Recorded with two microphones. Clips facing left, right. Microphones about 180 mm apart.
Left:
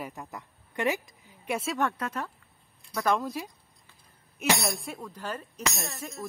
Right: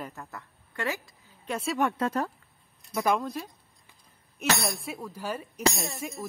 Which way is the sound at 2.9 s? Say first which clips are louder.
Right 1 dB; 15° right (ahead or behind).